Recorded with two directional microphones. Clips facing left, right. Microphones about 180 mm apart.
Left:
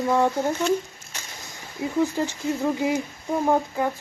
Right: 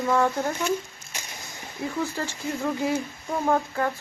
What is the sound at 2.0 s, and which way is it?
Speech, 15° left (ahead or behind).